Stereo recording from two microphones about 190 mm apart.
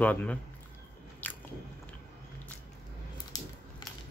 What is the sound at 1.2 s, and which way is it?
Biting, 10° left (ahead or behind).